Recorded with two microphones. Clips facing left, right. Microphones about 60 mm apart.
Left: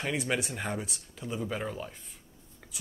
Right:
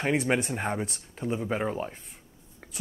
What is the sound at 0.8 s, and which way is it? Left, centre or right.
Speech, right.